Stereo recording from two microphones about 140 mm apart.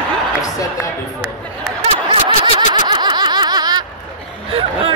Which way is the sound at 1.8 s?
40° right (ahead or behind).